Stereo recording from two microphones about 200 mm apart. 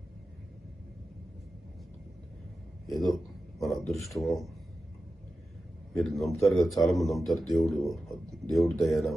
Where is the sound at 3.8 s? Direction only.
Centre (ahead or behind).